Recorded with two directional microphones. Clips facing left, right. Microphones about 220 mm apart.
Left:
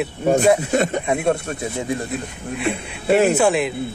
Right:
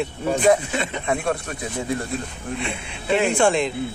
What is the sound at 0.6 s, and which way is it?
Speech, 45° left (ahead or behind).